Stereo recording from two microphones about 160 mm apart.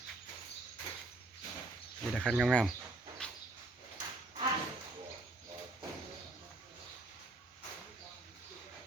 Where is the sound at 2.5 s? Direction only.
5° left (ahead or behind).